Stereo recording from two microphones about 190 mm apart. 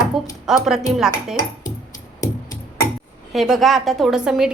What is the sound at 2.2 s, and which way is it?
Music, 15° left (ahead or behind).